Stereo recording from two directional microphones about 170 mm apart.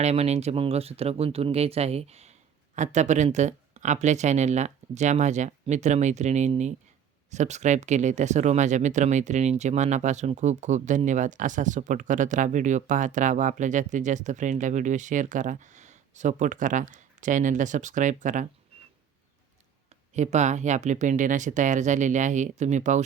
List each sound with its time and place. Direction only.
0.0 s speech: 40° right (ahead or behind)
20.1 s speech: 45° right (ahead or behind)